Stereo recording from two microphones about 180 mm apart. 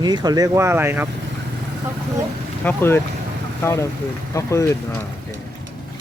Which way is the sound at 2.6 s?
10° left (ahead or behind).